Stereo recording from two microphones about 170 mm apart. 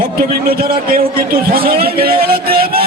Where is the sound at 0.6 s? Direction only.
60° right (ahead or behind).